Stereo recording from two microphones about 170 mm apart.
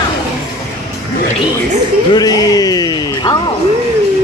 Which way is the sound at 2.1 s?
20° left (ahead or behind).